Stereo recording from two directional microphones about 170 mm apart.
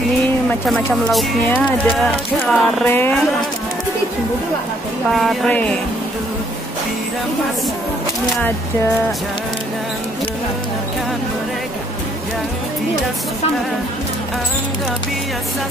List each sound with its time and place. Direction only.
0.5 s speech: centre (ahead or behind)
2.5 s speech: 5° left (ahead or behind)
5.1 s speech: centre (ahead or behind)